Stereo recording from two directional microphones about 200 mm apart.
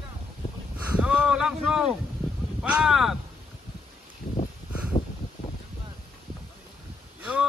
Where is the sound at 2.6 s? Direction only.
5° right (ahead or behind).